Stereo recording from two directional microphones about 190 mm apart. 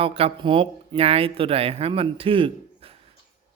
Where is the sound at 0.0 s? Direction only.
30° right (ahead or behind).